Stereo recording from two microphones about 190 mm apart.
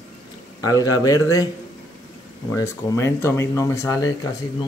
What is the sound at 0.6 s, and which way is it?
Speech, 20° left (ahead or behind).